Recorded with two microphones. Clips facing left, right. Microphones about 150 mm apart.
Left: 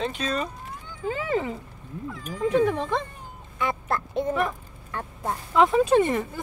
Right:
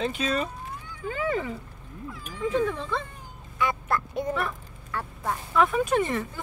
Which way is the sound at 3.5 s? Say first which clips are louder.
Even; 25° left (ahead or behind).